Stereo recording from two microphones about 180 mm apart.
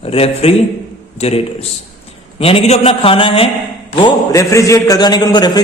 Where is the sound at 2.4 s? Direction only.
30° left (ahead or behind).